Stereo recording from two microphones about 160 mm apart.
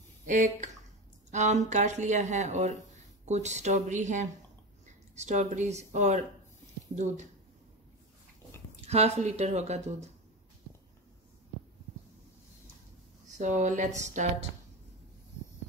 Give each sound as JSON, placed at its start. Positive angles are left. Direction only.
{"t": 0.3, "sound": "speech", "side_deg": -50}
{"t": 8.8, "sound": "speech", "side_deg": -40}
{"t": 13.4, "sound": "speech", "side_deg": -50}